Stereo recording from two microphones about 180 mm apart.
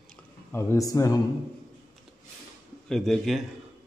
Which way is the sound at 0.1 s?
15° left (ahead or behind).